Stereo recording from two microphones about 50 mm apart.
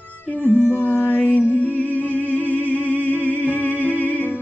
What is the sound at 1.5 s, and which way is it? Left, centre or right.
Music, right.